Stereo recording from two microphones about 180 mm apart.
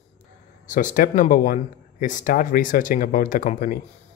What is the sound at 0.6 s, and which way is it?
Speech, 45° left (ahead or behind).